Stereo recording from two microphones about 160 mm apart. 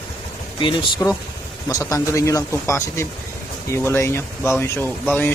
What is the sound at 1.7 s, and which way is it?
Speech, 20° left (ahead or behind).